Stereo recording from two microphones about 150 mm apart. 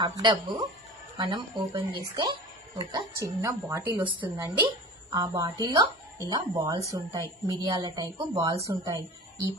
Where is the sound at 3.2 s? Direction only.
20° right (ahead or behind).